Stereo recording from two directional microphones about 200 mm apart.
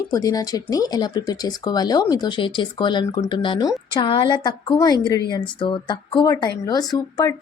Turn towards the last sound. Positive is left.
turn(degrees=20)  # may be behind; listen again after turning